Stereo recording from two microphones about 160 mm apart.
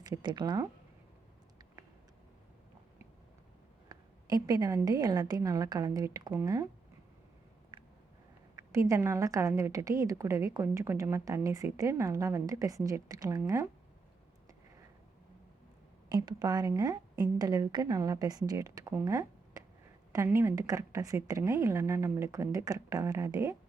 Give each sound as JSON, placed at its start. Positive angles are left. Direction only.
{"t": 0.0, "sound": "a woman's voice", "side_deg": -25}
{"t": 3.8, "sound": "a woman's voice", "side_deg": -25}
{"t": 8.7, "sound": "a woman's voice", "side_deg": -20}
{"t": 16.0, "sound": "a woman's voice", "side_deg": -25}